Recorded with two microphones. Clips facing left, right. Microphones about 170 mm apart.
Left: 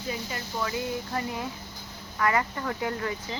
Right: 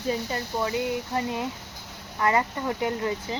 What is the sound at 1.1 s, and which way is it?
Speech, 20° right (ahead or behind).